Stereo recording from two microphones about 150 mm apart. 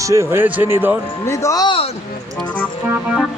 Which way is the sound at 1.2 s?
20° left (ahead or behind).